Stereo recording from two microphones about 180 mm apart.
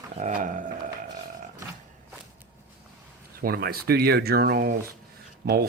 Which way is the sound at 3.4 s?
55° right (ahead or behind).